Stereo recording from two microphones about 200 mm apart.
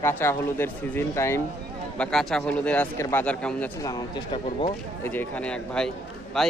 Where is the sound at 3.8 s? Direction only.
20° left (ahead or behind).